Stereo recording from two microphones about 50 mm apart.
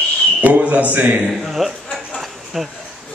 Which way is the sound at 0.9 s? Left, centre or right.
Right.